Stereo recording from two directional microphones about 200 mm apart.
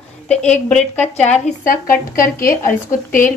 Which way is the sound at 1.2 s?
40° left (ahead or behind).